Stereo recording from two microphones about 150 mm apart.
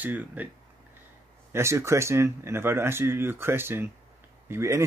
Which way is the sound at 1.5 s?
20° right (ahead or behind).